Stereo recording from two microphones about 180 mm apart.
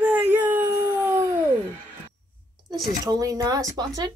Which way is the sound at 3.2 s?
20° right (ahead or behind).